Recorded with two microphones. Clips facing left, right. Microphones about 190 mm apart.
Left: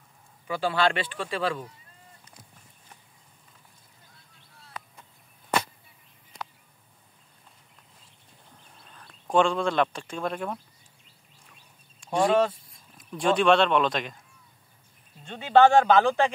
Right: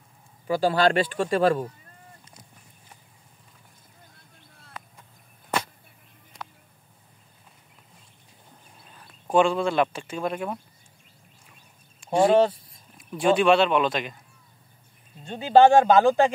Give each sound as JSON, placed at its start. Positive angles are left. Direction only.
{"t": 0.5, "sound": "speech", "side_deg": -40}
{"t": 8.7, "sound": "speech", "side_deg": -5}
{"t": 12.0, "sound": "speech", "side_deg": 0}
{"t": 15.2, "sound": "speech", "side_deg": -35}